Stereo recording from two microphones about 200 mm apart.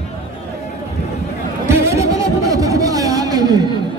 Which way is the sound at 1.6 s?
15° right (ahead or behind).